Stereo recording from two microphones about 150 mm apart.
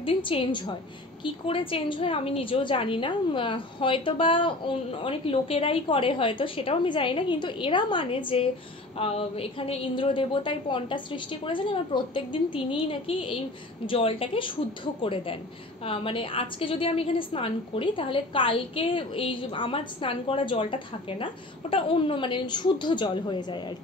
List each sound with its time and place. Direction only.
0.0 s a woman's voice: 35° left (ahead or behind)